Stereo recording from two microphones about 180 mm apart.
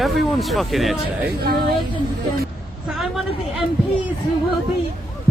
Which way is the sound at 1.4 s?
60° right (ahead or behind).